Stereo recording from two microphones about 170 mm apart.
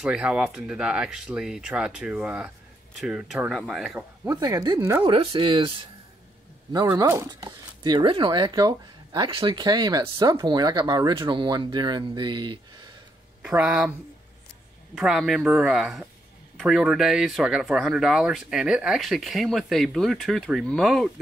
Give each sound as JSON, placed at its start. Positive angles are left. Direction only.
{"t": 0.0, "sound": "speech", "side_deg": -5}
{"t": 4.3, "sound": "speech", "side_deg": -20}
{"t": 5.1, "sound": "speech", "side_deg": -35}
{"t": 13.4, "sound": "speech", "side_deg": -10}
{"t": 15.0, "sound": "speech", "side_deg": -5}